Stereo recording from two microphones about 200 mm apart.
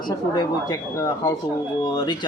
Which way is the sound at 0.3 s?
20° left (ahead or behind).